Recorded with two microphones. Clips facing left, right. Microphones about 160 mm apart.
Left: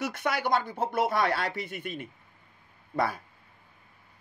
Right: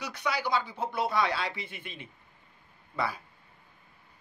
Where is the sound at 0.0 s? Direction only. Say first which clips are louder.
Left 3 dB; 50° left (ahead or behind).